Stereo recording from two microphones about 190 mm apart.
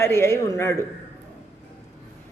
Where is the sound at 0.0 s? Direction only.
15° left (ahead or behind).